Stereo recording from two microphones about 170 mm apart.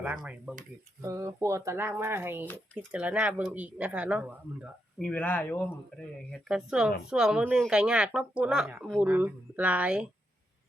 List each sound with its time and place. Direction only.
0.0 s speech: 5° right (ahead or behind)
1.0 s speech: 20° right (ahead or behind); by 5.7 s 10° left (ahead or behind)
6.5 s speech: 5° right (ahead or behind)